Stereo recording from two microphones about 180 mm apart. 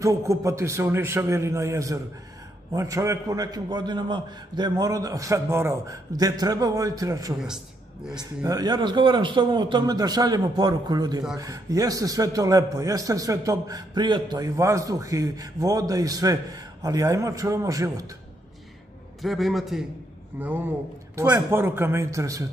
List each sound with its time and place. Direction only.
0.0 s a man's voice: 15° right (ahead or behind)
7.4 s a man's voice: 5° right (ahead or behind)
8.5 s a man's voice: 20° right (ahead or behind)
19.2 s a man's voice: centre (ahead or behind); by 22.4 s 15° right (ahead or behind)